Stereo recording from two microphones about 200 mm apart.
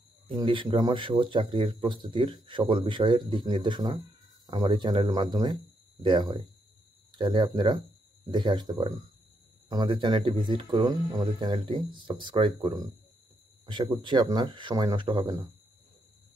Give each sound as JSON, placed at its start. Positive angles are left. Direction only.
{"t": 0.4, "sound": "speech", "side_deg": -25}